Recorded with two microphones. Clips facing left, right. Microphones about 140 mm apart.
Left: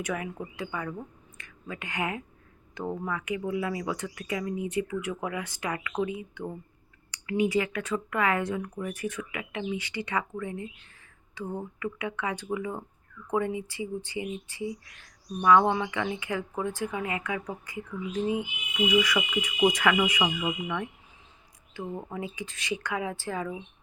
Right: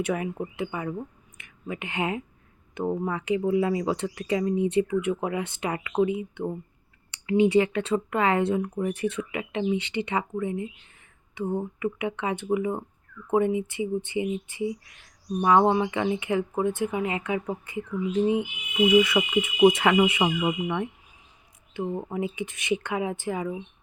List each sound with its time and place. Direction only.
0.0 s speech: 25° right (ahead or behind)